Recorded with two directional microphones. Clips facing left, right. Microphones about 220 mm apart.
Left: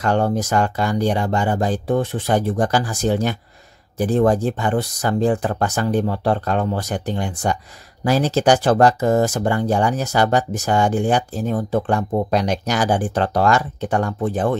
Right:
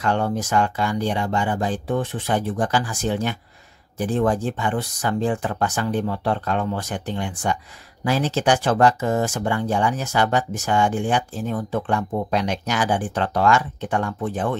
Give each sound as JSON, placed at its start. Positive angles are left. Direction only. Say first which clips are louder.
{"t": 0.0, "sound": "speech", "louder": "left 4 dB", "side_deg": 40}